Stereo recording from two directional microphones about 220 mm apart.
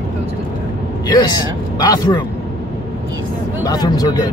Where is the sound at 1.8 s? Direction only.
20° left (ahead or behind).